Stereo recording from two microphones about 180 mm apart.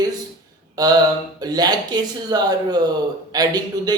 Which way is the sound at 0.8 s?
20° right (ahead or behind).